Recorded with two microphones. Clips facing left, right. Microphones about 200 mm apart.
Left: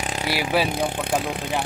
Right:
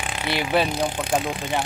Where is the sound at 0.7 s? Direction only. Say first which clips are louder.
Even; 55° left (ahead or behind).